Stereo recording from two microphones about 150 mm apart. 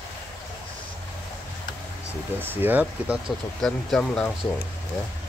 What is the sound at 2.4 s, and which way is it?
Speech, 15° right (ahead or behind).